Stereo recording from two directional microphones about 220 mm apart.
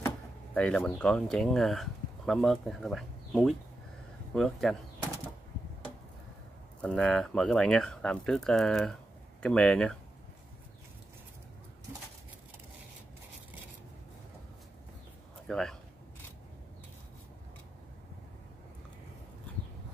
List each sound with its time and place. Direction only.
0.6 s speech: 5° left (ahead or behind)
6.8 s speech: 5° left (ahead or behind)
15.4 s a sound: centre (ahead or behind)